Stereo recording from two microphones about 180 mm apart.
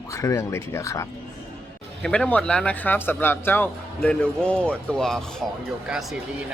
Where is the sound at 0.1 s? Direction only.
15° left (ahead or behind).